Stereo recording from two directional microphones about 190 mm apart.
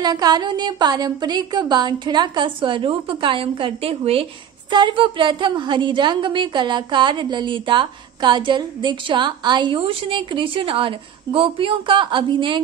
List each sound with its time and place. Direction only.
0.0 s a woman's voice: 20° right (ahead or behind)